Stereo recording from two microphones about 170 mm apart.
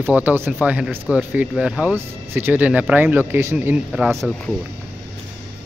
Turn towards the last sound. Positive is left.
turn(degrees=0)  # may be behind; listen again after turning